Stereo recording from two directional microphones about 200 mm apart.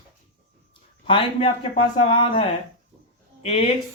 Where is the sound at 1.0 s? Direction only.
25° left (ahead or behind).